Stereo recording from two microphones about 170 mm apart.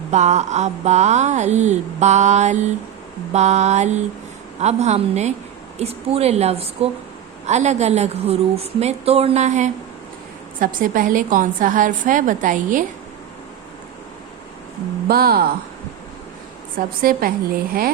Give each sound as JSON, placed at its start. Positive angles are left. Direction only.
{"t": 0.1, "sound": "a woman's voice", "side_deg": -40}
{"t": 15.0, "sound": "a woman's voice", "side_deg": -65}
{"t": 16.7, "sound": "a woman's voice", "side_deg": -60}